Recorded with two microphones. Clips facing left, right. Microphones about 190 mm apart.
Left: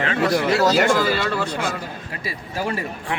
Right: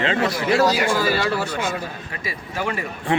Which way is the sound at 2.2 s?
35° left (ahead or behind).